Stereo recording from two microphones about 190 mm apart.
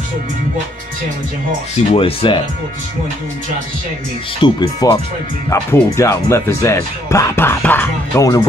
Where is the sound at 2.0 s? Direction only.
25° left (ahead or behind).